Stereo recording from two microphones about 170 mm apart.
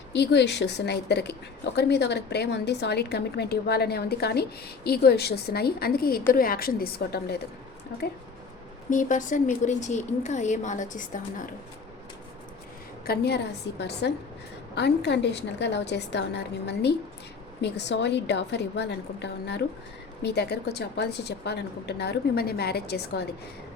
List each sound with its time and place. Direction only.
0.1 s a woman's voice: 90° left; by 7.4 s 70° left (ahead or behind)
8.9 s a woman's voice: 50° left (ahead or behind)
13.1 s a woman's voice: 75° left (ahead or behind)
17.6 s a woman's voice: 90° left; by 23.2 s 70° left (ahead or behind)